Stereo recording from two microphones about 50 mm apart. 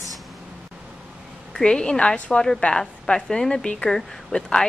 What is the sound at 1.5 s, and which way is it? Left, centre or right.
A woman's voice, centre.